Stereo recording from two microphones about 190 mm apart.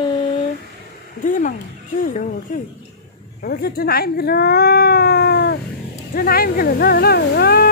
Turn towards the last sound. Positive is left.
turn(degrees=55)  # may be behind; listen again after turning